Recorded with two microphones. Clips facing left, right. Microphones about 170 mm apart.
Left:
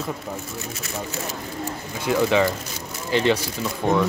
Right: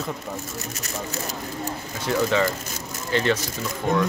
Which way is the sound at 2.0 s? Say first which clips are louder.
Left 2 dB; 15° left (ahead or behind).